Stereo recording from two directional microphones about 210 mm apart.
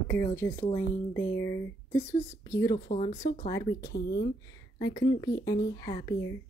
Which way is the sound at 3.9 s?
50° left (ahead or behind).